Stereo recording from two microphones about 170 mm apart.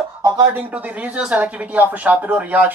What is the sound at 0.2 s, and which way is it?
Speech, 15° right (ahead or behind).